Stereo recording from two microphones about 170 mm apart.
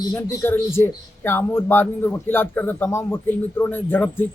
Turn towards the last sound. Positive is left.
turn(degrees=10)  # may be behind; listen again after turning